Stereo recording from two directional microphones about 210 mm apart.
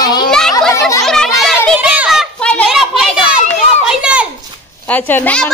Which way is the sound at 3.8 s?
5° right (ahead or behind).